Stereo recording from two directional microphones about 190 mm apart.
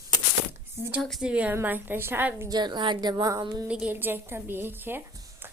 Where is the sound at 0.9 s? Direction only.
Centre (ahead or behind).